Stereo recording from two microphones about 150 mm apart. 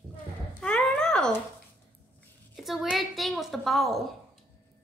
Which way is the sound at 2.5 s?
Centre (ahead or behind).